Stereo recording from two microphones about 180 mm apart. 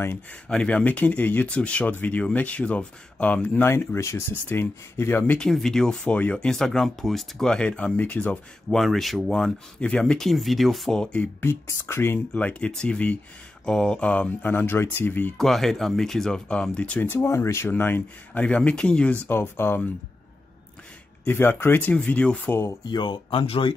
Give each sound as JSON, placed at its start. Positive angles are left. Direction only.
{"t": 0.0, "sound": "speech", "side_deg": 10}
{"t": 21.2, "sound": "speech", "side_deg": 10}
{"t": 22.8, "sound": "speech", "side_deg": 25}